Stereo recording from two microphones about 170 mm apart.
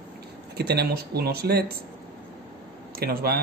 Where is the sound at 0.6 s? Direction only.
70° right (ahead or behind).